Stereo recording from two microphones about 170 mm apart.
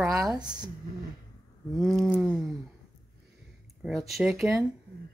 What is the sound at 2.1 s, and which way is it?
Speech, centre (ahead or behind).